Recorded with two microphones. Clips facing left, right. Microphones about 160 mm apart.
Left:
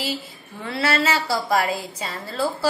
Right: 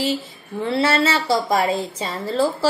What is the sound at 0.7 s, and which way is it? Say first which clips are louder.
A woman's voice: right 3 dB; 30° right (ahead or behind).